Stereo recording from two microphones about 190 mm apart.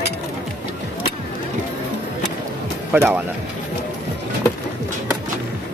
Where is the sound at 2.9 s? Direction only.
10° right (ahead or behind).